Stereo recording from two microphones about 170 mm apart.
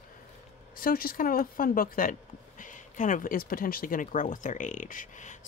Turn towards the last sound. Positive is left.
turn(degrees=50)  # may be behind; listen again after turning